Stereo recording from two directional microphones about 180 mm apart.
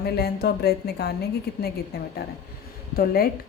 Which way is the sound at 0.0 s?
60° left (ahead or behind).